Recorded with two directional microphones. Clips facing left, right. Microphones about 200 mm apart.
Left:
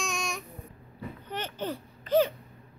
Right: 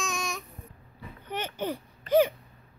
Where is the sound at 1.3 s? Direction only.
10° right (ahead or behind).